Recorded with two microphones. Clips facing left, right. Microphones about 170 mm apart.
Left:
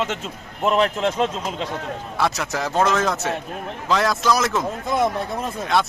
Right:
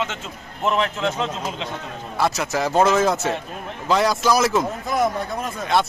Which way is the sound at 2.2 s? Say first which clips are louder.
Right 2 dB; centre (ahead or behind).